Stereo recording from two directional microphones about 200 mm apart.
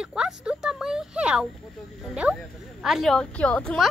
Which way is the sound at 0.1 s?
5° right (ahead or behind).